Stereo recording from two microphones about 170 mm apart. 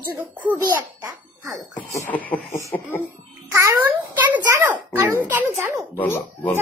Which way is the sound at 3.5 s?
15° right (ahead or behind).